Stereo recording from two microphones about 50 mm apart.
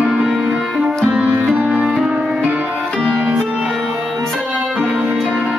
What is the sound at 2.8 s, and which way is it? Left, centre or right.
Music, centre.